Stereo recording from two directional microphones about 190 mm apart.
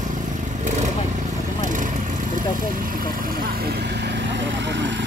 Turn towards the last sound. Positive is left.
turn(degrees=-70)  # may be behind; listen again after turning